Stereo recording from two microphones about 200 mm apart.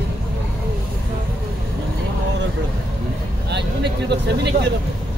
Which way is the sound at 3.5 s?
60° right (ahead or behind).